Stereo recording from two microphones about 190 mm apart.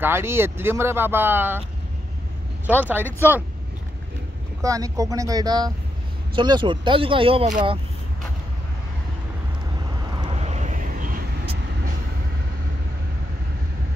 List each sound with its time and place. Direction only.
0.0 s speech: 10° right (ahead or behind)
2.6 s speech: 10° right (ahead or behind)
4.6 s speech: 15° right (ahead or behind)
10.3 s vehicle: 35° right (ahead or behind)